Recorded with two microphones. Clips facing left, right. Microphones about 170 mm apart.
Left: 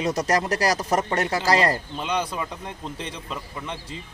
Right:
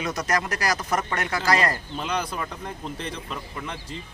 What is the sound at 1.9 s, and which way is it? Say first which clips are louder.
A man's voice: left 2 dB; centre (ahead or behind).